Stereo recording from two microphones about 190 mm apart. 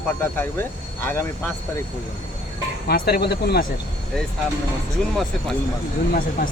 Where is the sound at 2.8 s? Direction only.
55° left (ahead or behind).